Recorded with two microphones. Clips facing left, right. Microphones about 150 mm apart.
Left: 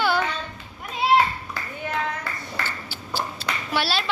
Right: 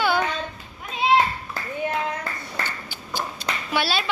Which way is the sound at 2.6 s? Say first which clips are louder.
Even; 15° right (ahead or behind).